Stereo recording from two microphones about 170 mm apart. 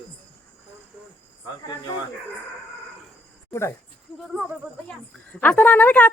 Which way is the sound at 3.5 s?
15° left (ahead or behind).